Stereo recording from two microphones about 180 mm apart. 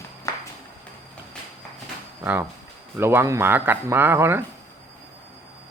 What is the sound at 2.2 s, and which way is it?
A man's voice, 10° right (ahead or behind).